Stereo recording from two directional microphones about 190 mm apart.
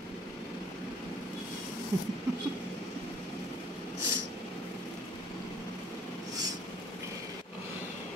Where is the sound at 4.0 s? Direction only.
70° right (ahead or behind).